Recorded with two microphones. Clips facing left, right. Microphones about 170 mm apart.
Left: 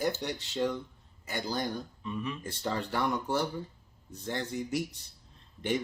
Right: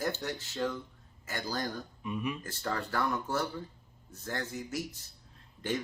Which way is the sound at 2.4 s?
20° left (ahead or behind).